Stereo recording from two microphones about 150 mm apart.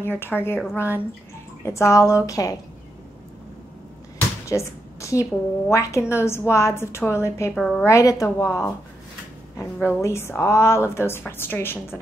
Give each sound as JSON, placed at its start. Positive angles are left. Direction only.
{"t": 0.0, "sound": "a woman's voice", "side_deg": 15}
{"t": 1.6, "sound": "a woman's voice", "side_deg": 20}
{"t": 4.5, "sound": "a woman's voice", "side_deg": 20}
{"t": 7.5, "sound": "a woman's voice", "side_deg": 5}
{"t": 7.8, "sound": "a woman's voice", "side_deg": 20}